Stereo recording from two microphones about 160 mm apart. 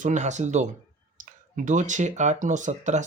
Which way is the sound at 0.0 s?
50° right (ahead or behind).